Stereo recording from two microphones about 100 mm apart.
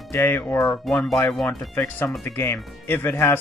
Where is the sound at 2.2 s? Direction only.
20° left (ahead or behind).